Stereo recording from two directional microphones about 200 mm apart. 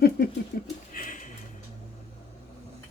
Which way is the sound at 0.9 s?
40° left (ahead or behind).